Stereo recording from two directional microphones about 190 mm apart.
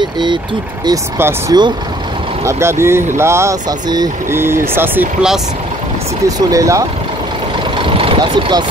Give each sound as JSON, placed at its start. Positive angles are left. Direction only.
{"t": 0.0, "sound": "speech", "side_deg": -25}
{"t": 6.2, "sound": "speech", "side_deg": -15}
{"t": 8.0, "sound": "speech", "side_deg": -25}